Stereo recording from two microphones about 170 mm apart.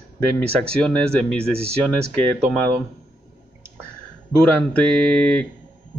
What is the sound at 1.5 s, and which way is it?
Speech, 35° right (ahead or behind).